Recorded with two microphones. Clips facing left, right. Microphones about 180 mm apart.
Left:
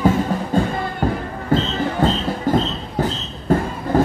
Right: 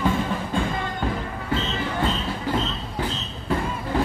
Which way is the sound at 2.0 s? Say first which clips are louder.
Left 6 dB; 45° left (ahead or behind).